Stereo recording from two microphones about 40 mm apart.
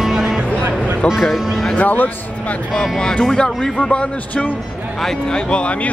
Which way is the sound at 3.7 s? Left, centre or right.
Left.